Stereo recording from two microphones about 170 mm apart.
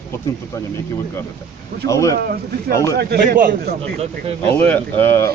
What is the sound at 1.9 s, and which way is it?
Speech, 20° left (ahead or behind).